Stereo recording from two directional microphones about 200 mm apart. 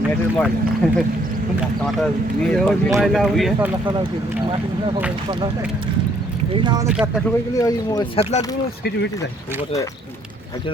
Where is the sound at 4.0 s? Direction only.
25° right (ahead or behind).